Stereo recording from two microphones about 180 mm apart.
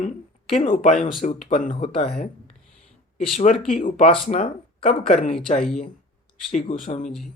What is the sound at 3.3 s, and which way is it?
Speech, 40° left (ahead or behind).